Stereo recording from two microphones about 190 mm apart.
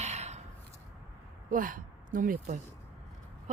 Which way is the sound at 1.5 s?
45° right (ahead or behind).